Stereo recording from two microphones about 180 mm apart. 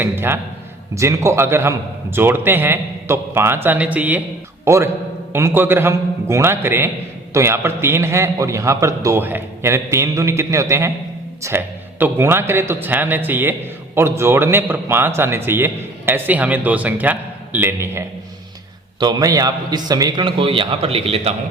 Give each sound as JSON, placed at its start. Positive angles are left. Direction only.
{"t": 0.0, "sound": "a man's voice", "side_deg": -10}